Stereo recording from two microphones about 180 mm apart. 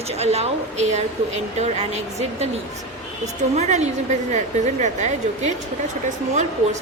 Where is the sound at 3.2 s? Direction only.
40° right (ahead or behind).